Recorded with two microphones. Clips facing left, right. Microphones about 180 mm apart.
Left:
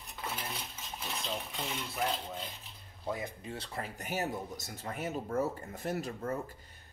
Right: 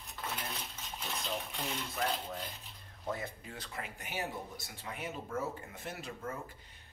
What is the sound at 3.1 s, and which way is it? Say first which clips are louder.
Speech: left 2 dB; 15° left (ahead or behind).